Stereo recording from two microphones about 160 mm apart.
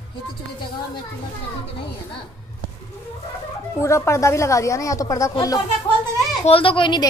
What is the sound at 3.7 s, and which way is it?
A woman's voice, 15° left (ahead or behind).